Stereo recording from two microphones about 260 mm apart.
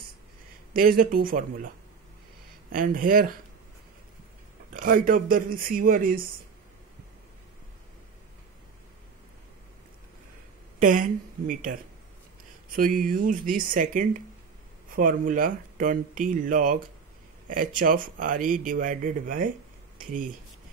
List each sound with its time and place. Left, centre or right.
0.7 s speech: right
2.7 s speech: right
4.7 s speech: right
10.8 s speech: right